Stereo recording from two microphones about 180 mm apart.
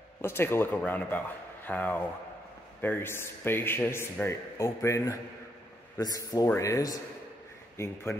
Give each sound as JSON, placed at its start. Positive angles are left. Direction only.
{"t": 0.2, "sound": "a man's voice", "side_deg": 15}